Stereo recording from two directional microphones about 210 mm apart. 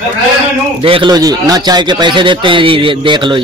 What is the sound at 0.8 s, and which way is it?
Speech, 25° right (ahead or behind).